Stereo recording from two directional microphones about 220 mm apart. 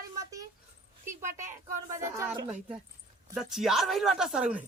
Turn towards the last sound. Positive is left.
turn(degrees=-5)  # may be behind; listen again after turning